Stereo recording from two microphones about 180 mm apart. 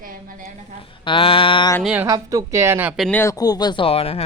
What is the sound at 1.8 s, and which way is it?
Speech, 5° right (ahead or behind).